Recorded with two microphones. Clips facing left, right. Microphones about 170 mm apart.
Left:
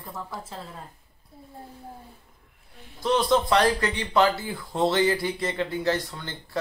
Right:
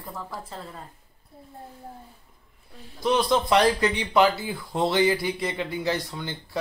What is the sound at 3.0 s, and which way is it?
Speech, 15° right (ahead or behind).